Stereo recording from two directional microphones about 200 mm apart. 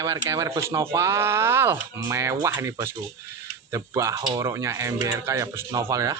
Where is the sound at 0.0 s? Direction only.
15° right (ahead or behind).